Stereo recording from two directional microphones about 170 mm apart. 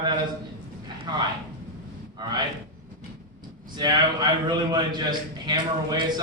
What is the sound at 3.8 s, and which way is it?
A man's voice, 25° right (ahead or behind).